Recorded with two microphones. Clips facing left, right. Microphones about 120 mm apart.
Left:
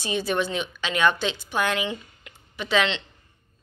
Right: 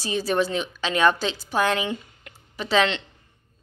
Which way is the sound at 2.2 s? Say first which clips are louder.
Right 1 dB; 35° right (ahead or behind).